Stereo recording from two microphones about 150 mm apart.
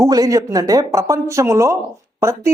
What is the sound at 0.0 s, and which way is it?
Speech, 25° right (ahead or behind).